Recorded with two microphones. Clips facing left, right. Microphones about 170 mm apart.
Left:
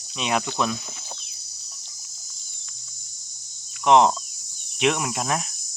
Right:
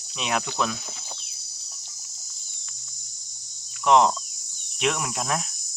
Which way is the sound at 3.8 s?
Centre (ahead or behind).